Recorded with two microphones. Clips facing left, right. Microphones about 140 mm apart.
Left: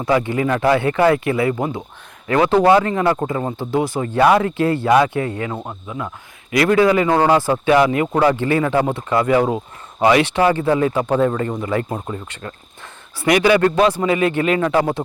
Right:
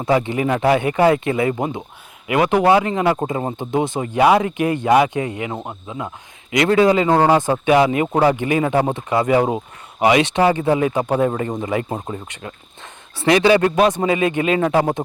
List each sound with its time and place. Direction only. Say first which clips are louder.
0.0 s a man's voice: even; 25° right (ahead or behind)
13.1 s a man's voice: right 1 dB; 25° right (ahead or behind)